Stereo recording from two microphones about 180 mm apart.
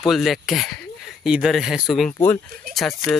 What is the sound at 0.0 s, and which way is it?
Speech, centre (ahead or behind).